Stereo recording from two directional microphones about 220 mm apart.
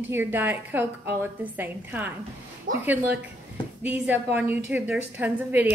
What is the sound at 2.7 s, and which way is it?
Speech, 40° right (ahead or behind).